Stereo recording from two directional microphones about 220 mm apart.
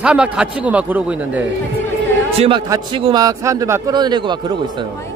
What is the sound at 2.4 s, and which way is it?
A man's voice, 20° right (ahead or behind).